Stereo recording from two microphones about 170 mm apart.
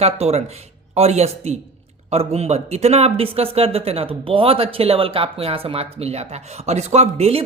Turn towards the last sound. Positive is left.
turn(degrees=-40)  # may be behind; listen again after turning